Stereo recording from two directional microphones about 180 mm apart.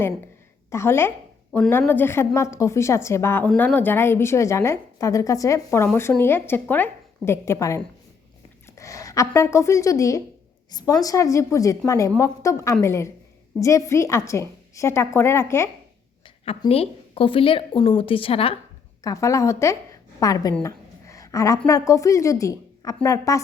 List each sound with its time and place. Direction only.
0.7 s a woman's voice: 15° left (ahead or behind)
16.2 s a woman's voice: 30° left (ahead or behind)
19.0 s a woman's voice: 15° left (ahead or behind)
20.1 s a sound: 20° left (ahead or behind)
21.7 s a woman's voice: 20° left (ahead or behind)